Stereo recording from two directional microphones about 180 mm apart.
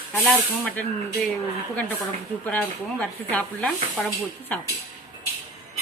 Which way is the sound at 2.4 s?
10° left (ahead or behind).